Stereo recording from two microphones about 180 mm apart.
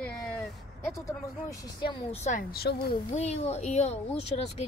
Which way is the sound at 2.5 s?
60° left (ahead or behind).